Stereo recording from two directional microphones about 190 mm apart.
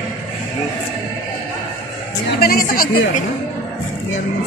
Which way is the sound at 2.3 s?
55° left (ahead or behind).